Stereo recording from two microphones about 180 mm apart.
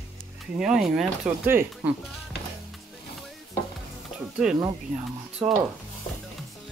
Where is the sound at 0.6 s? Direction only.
Centre (ahead or behind).